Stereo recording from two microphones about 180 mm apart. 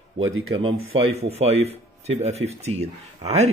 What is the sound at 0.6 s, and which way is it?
Speech, 35° right (ahead or behind).